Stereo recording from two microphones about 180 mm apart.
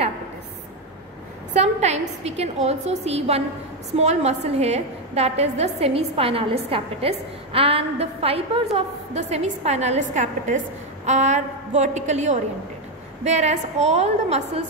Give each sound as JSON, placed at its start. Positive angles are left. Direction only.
{"t": 1.5, "sound": "a woman's voice", "side_deg": -40}